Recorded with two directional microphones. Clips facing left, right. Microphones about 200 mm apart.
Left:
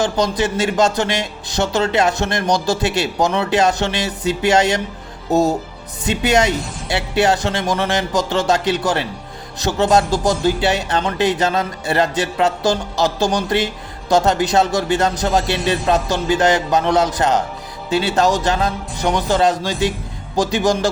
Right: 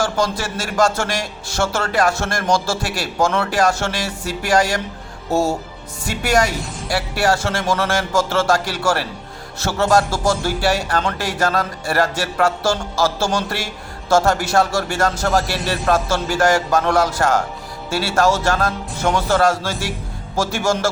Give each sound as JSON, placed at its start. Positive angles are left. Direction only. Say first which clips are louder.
{"t": 0.0, "sound": "speech", "louder": "left 3 dB", "side_deg": 20}